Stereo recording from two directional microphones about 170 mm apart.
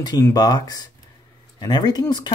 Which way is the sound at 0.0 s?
25° left (ahead or behind).